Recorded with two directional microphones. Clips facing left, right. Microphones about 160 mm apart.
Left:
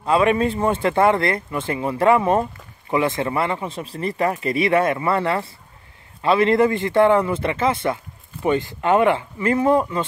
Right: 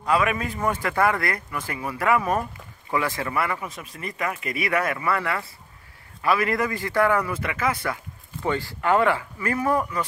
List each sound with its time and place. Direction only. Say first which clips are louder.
0.0 s speech: left 6 dB; 25° left (ahead or behind)